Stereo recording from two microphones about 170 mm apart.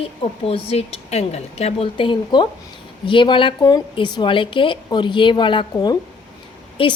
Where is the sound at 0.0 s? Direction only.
35° left (ahead or behind).